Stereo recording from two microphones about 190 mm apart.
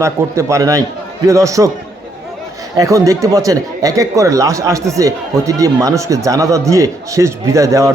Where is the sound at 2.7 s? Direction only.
15° right (ahead or behind).